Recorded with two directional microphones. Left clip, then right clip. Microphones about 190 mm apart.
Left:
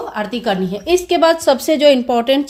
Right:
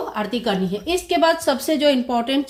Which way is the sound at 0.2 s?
45° left (ahead or behind).